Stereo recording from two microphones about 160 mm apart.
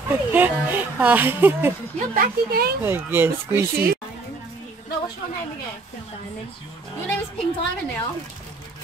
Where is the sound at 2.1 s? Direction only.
75° right (ahead or behind).